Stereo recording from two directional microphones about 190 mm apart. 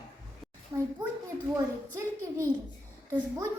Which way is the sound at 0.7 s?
20° right (ahead or behind).